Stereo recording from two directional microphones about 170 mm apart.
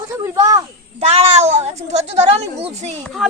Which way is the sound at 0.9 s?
40° right (ahead or behind).